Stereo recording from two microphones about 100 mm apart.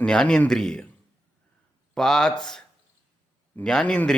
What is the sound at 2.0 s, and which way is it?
A man's voice, 5° left (ahead or behind).